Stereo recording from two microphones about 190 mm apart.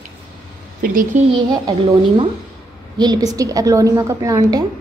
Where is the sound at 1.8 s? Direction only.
30° right (ahead or behind).